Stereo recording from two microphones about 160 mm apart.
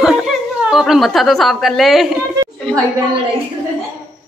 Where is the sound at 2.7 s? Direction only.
5° left (ahead or behind).